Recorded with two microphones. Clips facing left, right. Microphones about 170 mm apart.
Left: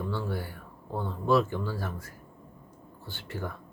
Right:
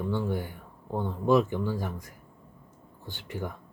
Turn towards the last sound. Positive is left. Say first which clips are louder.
# right 1 dB
turn(degrees=-15)  # may be behind; listen again after turning